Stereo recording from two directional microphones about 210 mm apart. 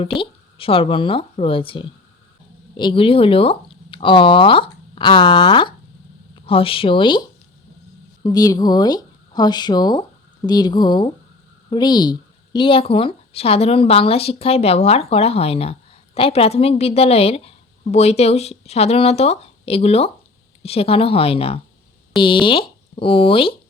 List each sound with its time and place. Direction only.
0.0 s a woman's voice: 25° left (ahead or behind)
8.2 s a woman's voice: 15° left (ahead or behind)